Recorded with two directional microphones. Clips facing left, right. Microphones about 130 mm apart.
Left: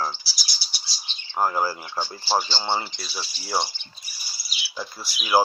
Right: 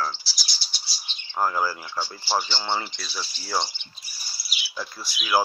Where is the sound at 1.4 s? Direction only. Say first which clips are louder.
Left 1 dB; 20° left (ahead or behind).